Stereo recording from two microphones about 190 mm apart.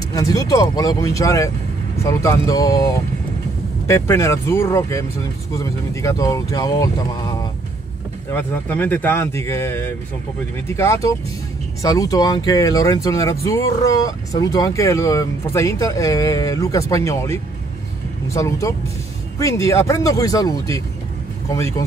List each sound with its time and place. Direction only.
0.1 s speech: 20° left (ahead or behind)